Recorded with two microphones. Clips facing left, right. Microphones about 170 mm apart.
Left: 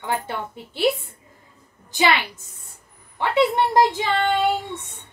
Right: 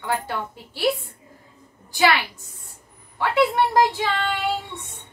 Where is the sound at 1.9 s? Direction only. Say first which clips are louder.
Right 1 dB; 20° left (ahead or behind).